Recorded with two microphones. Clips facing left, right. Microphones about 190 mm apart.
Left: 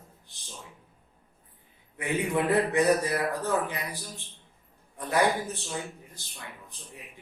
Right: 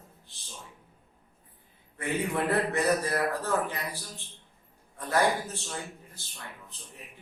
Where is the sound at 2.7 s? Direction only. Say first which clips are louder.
Left 3 dB; 15° left (ahead or behind).